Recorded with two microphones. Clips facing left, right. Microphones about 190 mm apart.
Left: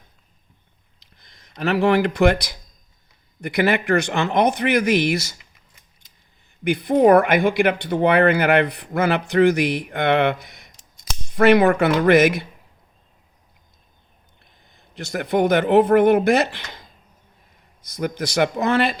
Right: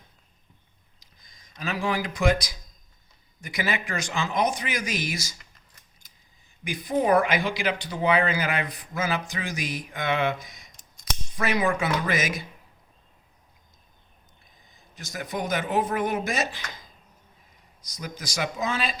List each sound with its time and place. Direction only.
0.9 s speech: 65° left (ahead or behind)
6.7 s speech: 65° left (ahead or behind)
14.6 s speech: 60° left (ahead or behind)